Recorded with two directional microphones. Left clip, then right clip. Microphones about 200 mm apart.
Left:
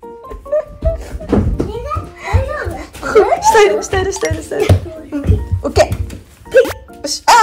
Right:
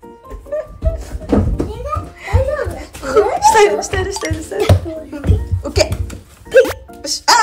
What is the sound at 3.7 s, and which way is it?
Speech, 5° right (ahead or behind).